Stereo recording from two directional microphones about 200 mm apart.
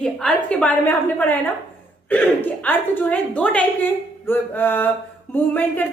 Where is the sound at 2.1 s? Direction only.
10° left (ahead or behind).